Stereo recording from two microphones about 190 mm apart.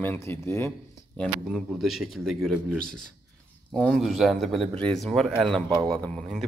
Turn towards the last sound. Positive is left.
turn(degrees=5)  # may be behind; listen again after turning